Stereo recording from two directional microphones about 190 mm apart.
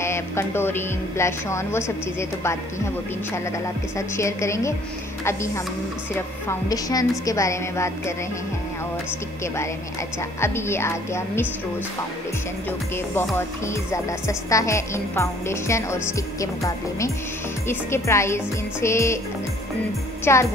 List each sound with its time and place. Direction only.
0.0 s speech: 15° left (ahead or behind)
4.2 s speech: 15° left (ahead or behind)
10.4 s speech: 15° left (ahead or behind)
13.7 s speech: 15° left (ahead or behind)
20.3 s speech: 10° left (ahead or behind)